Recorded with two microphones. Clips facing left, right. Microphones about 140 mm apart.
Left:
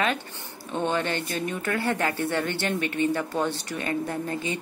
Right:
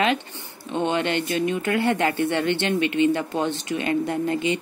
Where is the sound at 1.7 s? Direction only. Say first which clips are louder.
Right 4 dB; 20° right (ahead or behind).